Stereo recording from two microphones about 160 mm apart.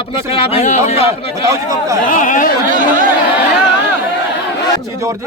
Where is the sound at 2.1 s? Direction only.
55° left (ahead or behind).